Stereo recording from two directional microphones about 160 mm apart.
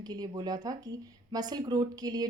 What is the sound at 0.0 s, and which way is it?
Speech, 25° right (ahead or behind).